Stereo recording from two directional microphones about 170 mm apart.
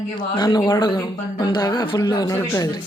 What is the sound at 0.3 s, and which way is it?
A man's voice, 25° left (ahead or behind).